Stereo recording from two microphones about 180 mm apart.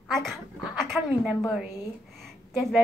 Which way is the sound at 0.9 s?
Centre (ahead or behind).